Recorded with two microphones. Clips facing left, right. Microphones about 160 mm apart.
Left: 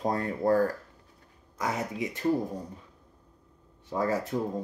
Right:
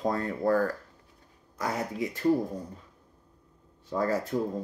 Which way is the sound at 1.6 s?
20° left (ahead or behind).